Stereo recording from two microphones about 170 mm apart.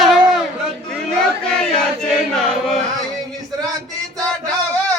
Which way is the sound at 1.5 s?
5° left (ahead or behind).